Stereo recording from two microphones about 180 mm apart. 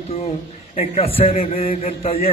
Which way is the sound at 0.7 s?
30° left (ahead or behind).